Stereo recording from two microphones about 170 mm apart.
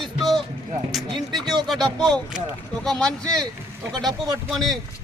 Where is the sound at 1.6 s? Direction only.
Centre (ahead or behind).